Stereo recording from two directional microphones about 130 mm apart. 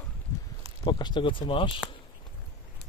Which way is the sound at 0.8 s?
35° left (ahead or behind).